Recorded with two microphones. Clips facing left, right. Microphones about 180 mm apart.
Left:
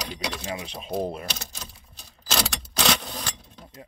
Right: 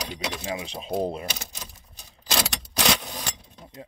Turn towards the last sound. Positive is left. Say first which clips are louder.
# even
turn(degrees=-10)  # may be behind; listen again after turning